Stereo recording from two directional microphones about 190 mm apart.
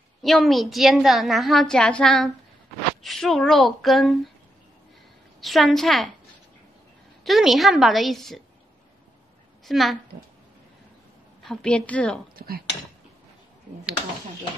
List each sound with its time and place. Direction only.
0.2 s a woman's voice: centre (ahead or behind)
5.4 s a woman's voice: centre (ahead or behind)
7.2 s a woman's voice: centre (ahead or behind)
9.7 s a child's voice: centre (ahead or behind)
11.4 s a woman's voice: 5° left (ahead or behind)
12.4 s speech: 50° right (ahead or behind)